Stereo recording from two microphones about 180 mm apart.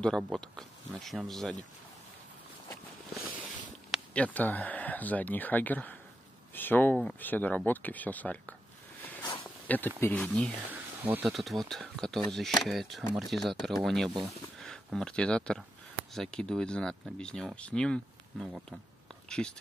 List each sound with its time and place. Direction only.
0.0 s speech: 5° left (ahead or behind)
3.9 s speech: 5° left (ahead or behind)
9.2 s a sound: 30° left (ahead or behind)
9.7 s speech: 10° left (ahead or behind)
10.7 s speech: 10° right (ahead or behind)
19.2 s a sound: 5° left (ahead or behind)